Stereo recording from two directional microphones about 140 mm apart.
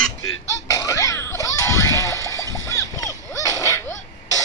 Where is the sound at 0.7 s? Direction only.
25° left (ahead or behind).